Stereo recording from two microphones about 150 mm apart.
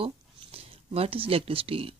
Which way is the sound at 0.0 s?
40° right (ahead or behind).